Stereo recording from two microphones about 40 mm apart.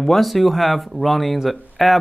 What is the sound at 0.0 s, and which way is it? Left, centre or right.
Speech, centre.